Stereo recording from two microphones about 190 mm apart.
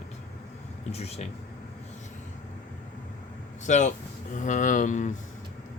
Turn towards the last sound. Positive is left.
turn(degrees=40)  # may be behind; listen again after turning